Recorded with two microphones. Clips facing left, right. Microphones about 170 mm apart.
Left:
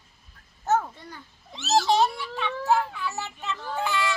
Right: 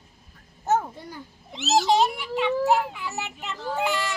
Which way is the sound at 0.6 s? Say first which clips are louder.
Right 1 dB; 15° right (ahead or behind).